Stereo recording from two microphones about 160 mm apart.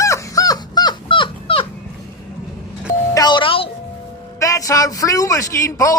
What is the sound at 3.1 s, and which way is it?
Doorbell, 25° left (ahead or behind).